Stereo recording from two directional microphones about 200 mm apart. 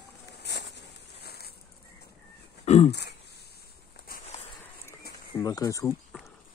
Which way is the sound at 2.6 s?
35° left (ahead or behind).